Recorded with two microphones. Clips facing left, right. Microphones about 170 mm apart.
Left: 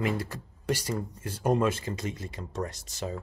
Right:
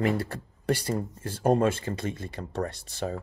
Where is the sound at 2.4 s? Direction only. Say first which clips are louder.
Right 3 dB; 50° right (ahead or behind).